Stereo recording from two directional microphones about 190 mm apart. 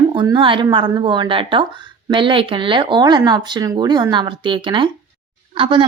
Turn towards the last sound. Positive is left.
turn(degrees=-25)  # may be behind; listen again after turning